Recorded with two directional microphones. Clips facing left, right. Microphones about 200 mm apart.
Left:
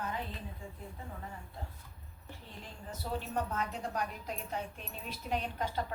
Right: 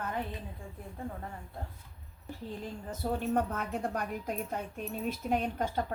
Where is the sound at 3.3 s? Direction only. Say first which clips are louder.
Right 4 dB; 55° right (ahead or behind).